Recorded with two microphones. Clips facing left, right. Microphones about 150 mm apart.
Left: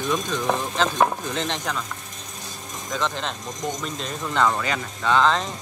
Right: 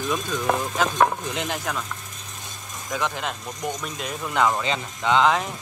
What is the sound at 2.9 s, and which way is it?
Speech, 10° right (ahead or behind).